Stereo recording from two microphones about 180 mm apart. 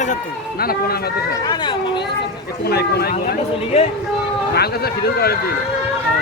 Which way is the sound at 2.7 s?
60° left (ahead or behind).